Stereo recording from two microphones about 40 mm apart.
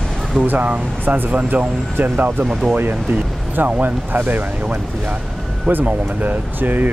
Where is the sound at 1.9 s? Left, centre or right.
Right.